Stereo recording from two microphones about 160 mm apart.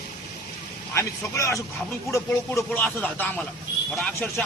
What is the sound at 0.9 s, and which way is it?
A man's voice, 20° left (ahead or behind).